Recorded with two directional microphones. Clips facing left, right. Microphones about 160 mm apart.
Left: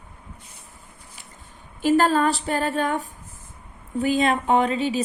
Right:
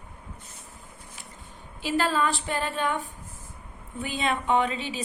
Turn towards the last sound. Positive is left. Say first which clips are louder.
# left 5 dB
turn(degrees=40)  # may be behind; listen again after turning